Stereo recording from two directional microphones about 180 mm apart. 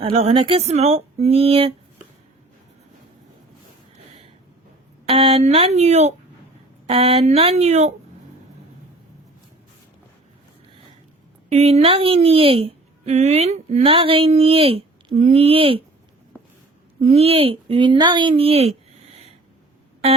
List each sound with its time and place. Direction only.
0.0 s a woman's voice: 35° right (ahead or behind)
5.0 s a woman's voice: 35° right (ahead or behind)
11.5 s a woman's voice: 35° right (ahead or behind)
17.0 s speech: 35° right (ahead or behind)